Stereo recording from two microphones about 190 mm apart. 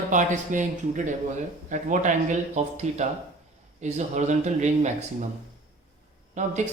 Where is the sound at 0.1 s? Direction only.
40° right (ahead or behind).